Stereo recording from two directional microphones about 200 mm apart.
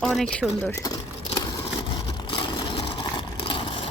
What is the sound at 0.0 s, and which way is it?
Speech, centre (ahead or behind).